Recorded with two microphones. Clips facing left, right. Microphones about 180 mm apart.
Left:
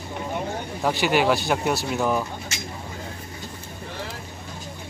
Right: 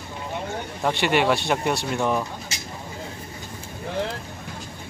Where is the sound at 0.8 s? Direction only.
Centre (ahead or behind).